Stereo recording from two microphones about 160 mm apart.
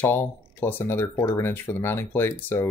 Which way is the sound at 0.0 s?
15° left (ahead or behind).